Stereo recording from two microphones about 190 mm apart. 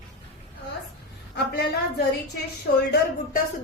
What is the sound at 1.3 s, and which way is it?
Speech, 60° left (ahead or behind).